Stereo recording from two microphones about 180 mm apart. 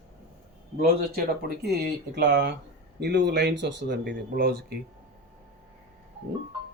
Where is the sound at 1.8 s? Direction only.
70° right (ahead or behind).